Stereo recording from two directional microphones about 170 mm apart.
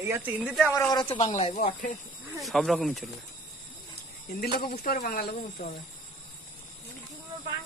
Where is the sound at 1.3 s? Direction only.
40° left (ahead or behind).